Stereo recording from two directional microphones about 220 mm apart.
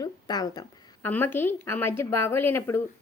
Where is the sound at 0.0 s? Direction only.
15° left (ahead or behind).